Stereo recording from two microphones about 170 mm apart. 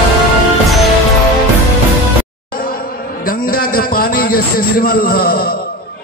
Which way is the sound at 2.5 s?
60° left (ahead or behind).